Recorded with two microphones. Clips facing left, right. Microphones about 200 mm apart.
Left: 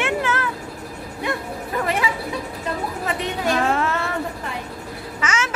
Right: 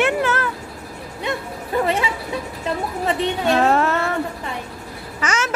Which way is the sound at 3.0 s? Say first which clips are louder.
Right 5 dB; 30° right (ahead or behind).